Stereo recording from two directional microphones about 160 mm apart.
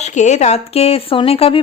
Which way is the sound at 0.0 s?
45° left (ahead or behind).